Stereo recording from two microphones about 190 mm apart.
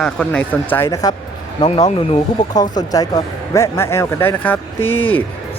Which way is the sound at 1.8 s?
35° left (ahead or behind).